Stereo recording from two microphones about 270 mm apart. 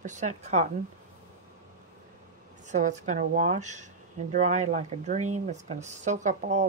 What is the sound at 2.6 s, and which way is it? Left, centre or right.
Speech, right.